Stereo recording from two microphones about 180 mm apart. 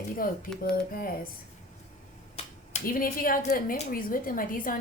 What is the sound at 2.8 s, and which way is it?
Speech, 55° left (ahead or behind).